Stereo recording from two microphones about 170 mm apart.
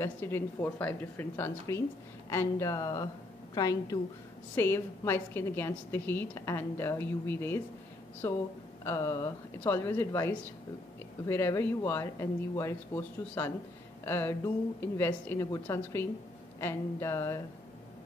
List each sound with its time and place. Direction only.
0.0 s a woman's voice: 15° left (ahead or behind)